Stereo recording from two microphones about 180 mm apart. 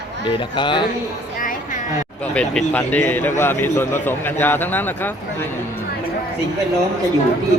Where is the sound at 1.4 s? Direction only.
50° left (ahead or behind).